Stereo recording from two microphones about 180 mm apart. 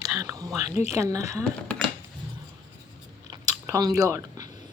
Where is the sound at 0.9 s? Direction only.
20° right (ahead or behind).